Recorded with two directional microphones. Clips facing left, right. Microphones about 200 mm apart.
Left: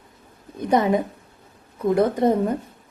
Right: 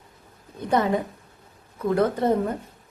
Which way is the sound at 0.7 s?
15° left (ahead or behind).